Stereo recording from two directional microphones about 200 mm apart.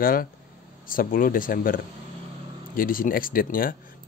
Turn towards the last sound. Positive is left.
turn(degrees=45)  # may be behind; listen again after turning